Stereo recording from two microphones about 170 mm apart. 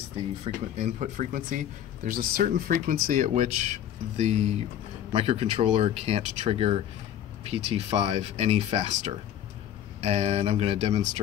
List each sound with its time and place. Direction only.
0.7 s speech: 45° right (ahead or behind)